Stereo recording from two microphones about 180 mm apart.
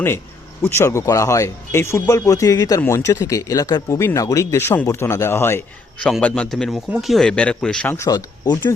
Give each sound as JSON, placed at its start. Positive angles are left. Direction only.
{"t": 0.6, "sound": "speech", "side_deg": 15}